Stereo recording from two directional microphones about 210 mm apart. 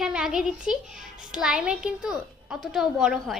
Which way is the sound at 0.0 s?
5° right (ahead or behind).